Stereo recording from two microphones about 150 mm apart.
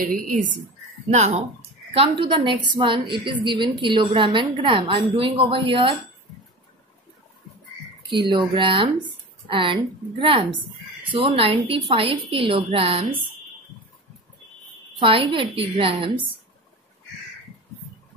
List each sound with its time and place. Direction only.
0.0 s a woman's voice: 60° right (ahead or behind)
1.1 s speech: 50° right (ahead or behind)
2.0 s a woman's voice: 35° right (ahead or behind)
8.1 s a woman's voice: 30° right (ahead or behind)
15.0 s a woman's voice: 35° right (ahead or behind)